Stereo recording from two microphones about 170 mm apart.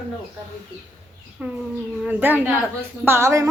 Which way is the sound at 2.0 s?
10° right (ahead or behind).